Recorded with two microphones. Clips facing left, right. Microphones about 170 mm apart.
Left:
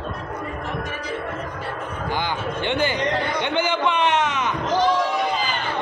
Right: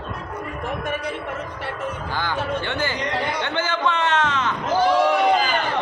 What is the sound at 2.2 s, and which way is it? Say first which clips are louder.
Speech: right 2 dB; 20° left (ahead or behind).